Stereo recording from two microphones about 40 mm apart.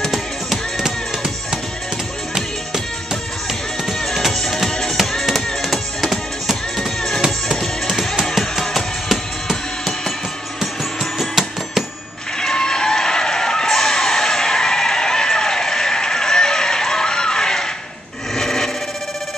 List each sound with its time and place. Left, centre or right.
0.1 s music: centre
2.3 s music: centre
12.4 s music: centre
18.3 s a sound: centre